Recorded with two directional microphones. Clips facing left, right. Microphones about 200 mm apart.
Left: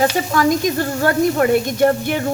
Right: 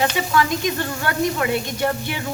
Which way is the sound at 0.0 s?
45° left (ahead or behind).